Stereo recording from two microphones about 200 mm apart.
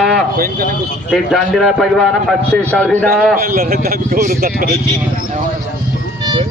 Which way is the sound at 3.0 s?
45° right (ahead or behind).